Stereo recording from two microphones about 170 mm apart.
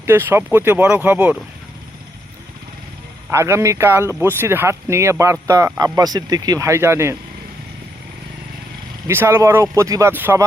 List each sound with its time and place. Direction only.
0.0 s speech: 15° right (ahead or behind)
3.2 s speech: 15° right (ahead or behind)
9.0 s speech: 15° right (ahead or behind)